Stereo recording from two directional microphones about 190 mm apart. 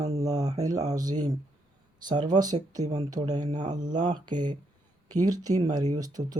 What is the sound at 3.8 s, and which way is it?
Speech, 25° right (ahead or behind).